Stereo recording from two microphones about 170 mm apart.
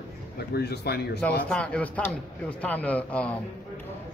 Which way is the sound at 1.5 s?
5° left (ahead or behind).